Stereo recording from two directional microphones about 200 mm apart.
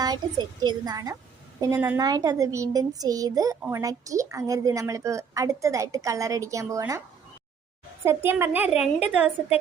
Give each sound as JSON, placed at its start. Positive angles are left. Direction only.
{"t": 0.6, "sound": "a woman's voice", "side_deg": -20}
{"t": 8.0, "sound": "a child's voice", "side_deg": -10}